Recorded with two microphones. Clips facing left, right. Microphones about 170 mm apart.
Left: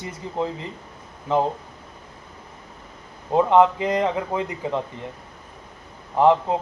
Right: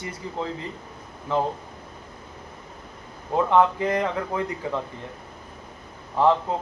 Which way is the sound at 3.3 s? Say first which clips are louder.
Left 3 dB; 20° left (ahead or behind).